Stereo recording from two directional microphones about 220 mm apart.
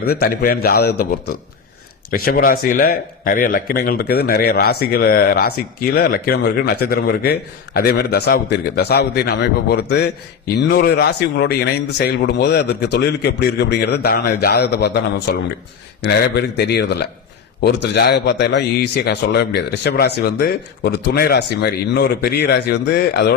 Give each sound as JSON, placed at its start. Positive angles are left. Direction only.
{"t": 0.0, "sound": "speech", "side_deg": 45}